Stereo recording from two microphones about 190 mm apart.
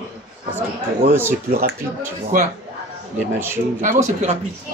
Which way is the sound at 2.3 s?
45° right (ahead or behind).